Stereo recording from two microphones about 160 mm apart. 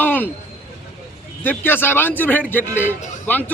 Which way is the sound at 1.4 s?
10° left (ahead or behind).